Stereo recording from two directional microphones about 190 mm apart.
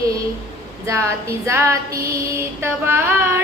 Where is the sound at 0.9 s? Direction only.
15° right (ahead or behind).